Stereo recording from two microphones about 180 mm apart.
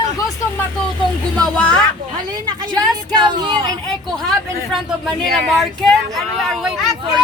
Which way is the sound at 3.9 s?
Centre (ahead or behind).